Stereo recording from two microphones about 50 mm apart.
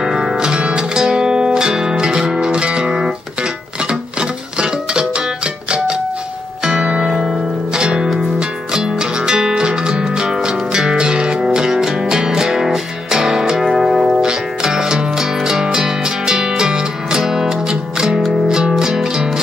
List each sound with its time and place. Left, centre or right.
0.0 s music: centre
4.2 s music: centre
6.6 s music: centre